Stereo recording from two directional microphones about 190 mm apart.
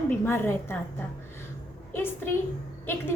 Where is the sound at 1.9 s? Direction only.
10° left (ahead or behind).